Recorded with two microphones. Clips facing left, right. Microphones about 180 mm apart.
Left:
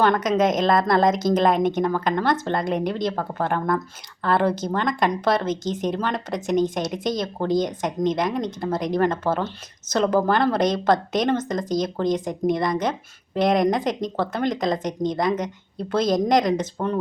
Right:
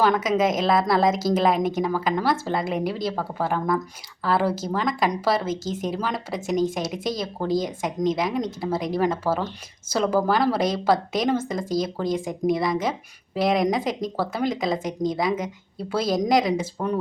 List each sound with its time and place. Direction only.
0.0 s speech: 5° right (ahead or behind)